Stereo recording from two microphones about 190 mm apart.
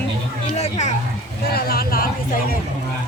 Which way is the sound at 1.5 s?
50° left (ahead or behind).